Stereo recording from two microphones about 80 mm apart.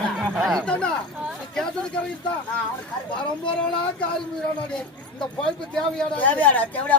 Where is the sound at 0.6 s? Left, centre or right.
Centre.